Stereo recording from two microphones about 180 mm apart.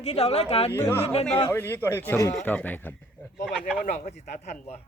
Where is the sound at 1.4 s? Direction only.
15° left (ahead or behind).